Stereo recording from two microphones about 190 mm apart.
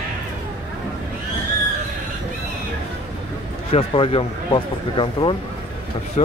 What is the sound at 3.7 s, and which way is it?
Speech, 30° left (ahead or behind).